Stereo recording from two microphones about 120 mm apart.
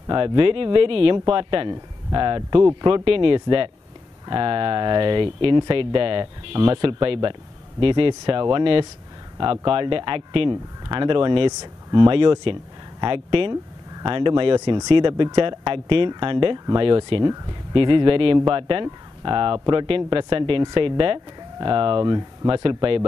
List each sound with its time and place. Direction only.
0.0 s speech: 40° right (ahead or behind)